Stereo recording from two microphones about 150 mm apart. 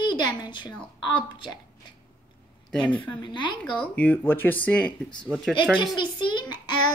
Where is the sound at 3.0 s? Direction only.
30° left (ahead or behind).